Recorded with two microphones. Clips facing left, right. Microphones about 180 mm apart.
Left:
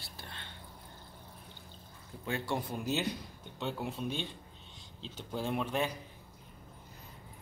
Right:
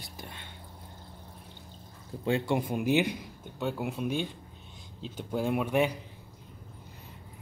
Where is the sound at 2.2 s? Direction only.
30° right (ahead or behind).